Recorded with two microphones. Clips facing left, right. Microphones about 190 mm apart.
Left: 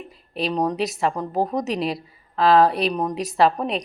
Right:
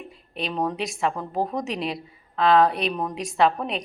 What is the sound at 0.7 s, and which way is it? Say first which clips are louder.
A woman's voice: left 3 dB; centre (ahead or behind).